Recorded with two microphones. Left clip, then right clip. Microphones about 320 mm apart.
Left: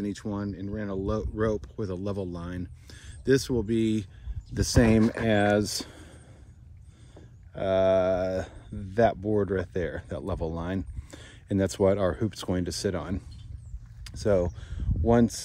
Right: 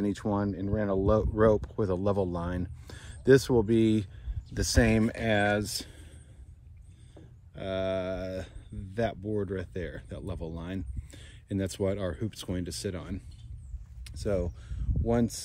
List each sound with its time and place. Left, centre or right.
0.0 s speech: centre
4.6 s speech: centre
7.2 s speech: left